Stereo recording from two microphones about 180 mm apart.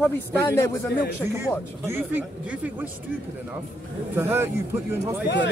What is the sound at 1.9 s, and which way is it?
Speech, 10° right (ahead or behind).